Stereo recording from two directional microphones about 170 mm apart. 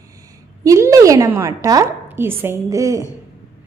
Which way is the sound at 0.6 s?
20° right (ahead or behind).